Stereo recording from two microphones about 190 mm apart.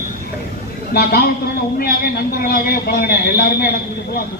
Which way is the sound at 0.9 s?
55° left (ahead or behind).